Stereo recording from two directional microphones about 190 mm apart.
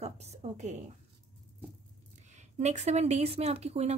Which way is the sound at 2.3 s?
35° right (ahead or behind).